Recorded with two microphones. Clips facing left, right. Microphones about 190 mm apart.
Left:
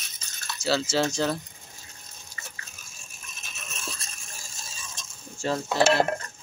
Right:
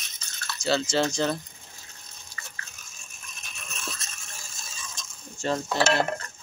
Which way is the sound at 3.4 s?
5° left (ahead or behind).